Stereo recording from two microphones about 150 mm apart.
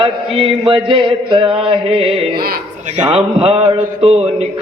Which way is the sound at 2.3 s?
90° right.